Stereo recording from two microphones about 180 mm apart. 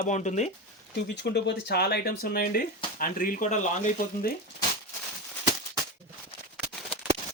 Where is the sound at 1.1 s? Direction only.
70° left (ahead or behind); by 4.3 s 50° left (ahead or behind).